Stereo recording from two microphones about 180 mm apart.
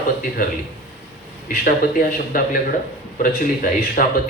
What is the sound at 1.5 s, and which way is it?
Speech, 50° left (ahead or behind).